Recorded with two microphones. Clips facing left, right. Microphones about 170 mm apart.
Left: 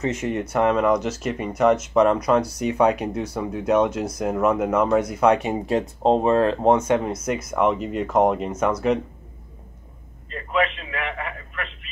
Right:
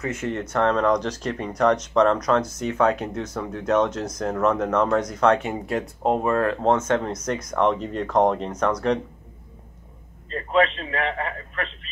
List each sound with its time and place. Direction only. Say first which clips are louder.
0.0 s speech: left 3 dB; 20° left (ahead or behind)
6.9 s speech: left 2 dB; 10° left (ahead or behind)
10.3 s a man's voice: right 3 dB; 35° right (ahead or behind)